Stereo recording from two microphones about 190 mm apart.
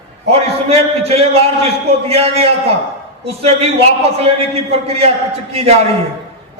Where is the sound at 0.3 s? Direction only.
30° right (ahead or behind).